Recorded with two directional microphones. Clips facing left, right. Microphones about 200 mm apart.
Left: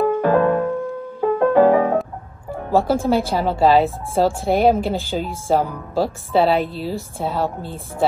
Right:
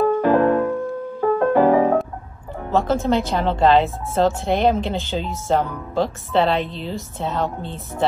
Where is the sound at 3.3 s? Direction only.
5° left (ahead or behind).